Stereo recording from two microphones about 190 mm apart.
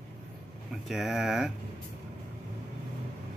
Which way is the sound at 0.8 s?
Centre (ahead or behind).